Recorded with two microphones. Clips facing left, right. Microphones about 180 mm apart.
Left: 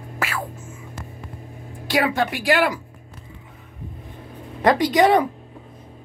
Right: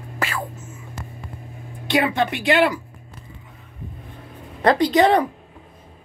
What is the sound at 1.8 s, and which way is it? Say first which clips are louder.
Speech: right 1 dB; 5° left (ahead or behind).